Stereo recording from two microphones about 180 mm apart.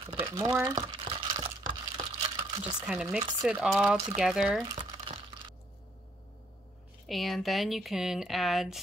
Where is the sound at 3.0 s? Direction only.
20° right (ahead or behind).